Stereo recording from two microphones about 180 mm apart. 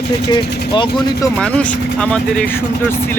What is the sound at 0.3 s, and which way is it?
Speech, 25° left (ahead or behind).